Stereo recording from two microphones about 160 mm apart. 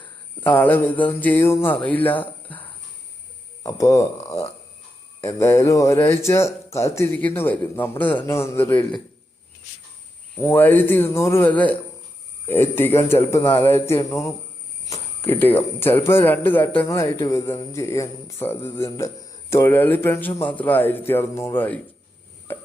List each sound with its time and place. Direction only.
0.4 s speech: 10° left (ahead or behind)
3.6 s speech: 20° left (ahead or behind)
10.4 s speech: 10° left (ahead or behind)